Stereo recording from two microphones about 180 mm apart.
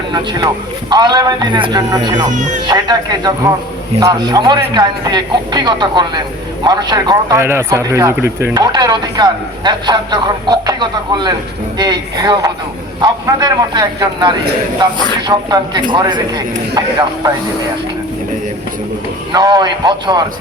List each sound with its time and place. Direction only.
0.1 s speech: 25° right (ahead or behind)
2.3 s speech: 40° right (ahead or behind)
2.6 s speech: 25° right (ahead or behind)
19.3 s speech: 25° right (ahead or behind)